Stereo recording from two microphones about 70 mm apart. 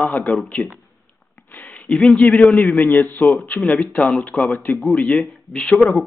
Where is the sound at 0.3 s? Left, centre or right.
Left.